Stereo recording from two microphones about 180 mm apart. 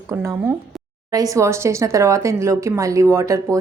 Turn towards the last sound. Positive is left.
turn(degrees=-15)  # may be behind; listen again after turning